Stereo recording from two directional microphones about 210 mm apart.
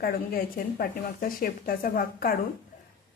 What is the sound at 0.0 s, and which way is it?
A woman's voice, 45° left (ahead or behind).